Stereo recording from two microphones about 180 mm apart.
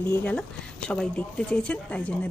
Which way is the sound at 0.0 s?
10° left (ahead or behind).